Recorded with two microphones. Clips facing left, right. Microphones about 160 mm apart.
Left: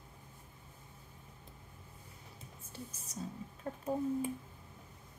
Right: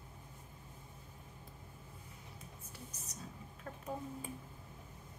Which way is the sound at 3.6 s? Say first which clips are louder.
Left 8 dB; 30° left (ahead or behind).